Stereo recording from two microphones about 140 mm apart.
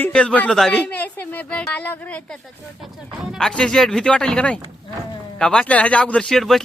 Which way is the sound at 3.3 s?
5° left (ahead or behind).